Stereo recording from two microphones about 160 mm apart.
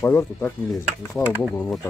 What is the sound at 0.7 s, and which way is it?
Speech, centre (ahead or behind).